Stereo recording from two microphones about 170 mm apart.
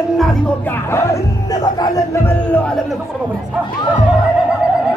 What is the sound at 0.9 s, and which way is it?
Music, 20° left (ahead or behind).